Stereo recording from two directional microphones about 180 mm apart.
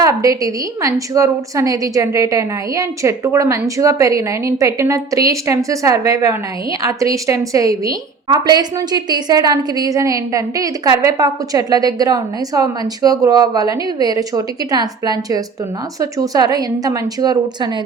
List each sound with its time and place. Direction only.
0.0 s a woman's voice: 20° right (ahead or behind)